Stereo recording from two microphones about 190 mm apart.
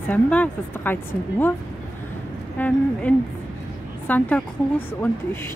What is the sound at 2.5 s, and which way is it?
A woman's voice, 10° left (ahead or behind).